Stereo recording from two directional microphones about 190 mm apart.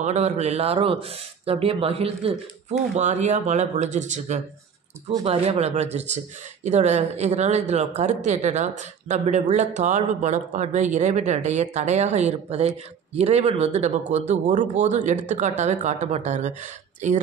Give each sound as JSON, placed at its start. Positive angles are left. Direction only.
{"t": 0.0, "sound": "speech", "side_deg": -35}